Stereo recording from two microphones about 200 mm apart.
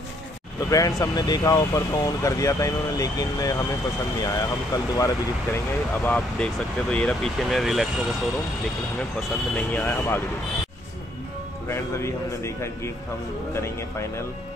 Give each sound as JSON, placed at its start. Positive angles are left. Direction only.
{"t": 0.7, "sound": "speech", "side_deg": 15}
{"t": 11.6, "sound": "speech", "side_deg": 15}